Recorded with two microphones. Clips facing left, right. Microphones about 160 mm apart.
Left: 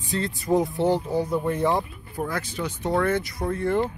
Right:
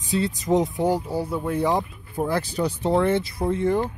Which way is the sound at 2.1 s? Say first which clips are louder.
Right 5 dB; 30° right (ahead or behind).